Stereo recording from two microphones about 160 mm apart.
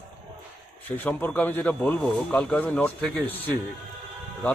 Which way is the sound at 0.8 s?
10° left (ahead or behind).